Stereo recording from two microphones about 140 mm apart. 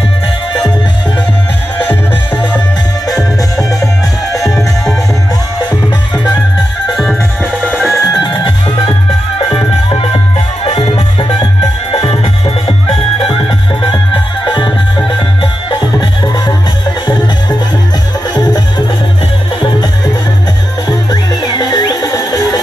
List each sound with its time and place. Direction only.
1.9 s music: 10° left (ahead or behind)
3.5 s music: 25° left (ahead or behind)
6.9 s music: centre (ahead or behind)
7.9 s music: 25° left (ahead or behind)
18.3 s music: 25° left (ahead or behind)
21.1 s music: 30° left (ahead or behind)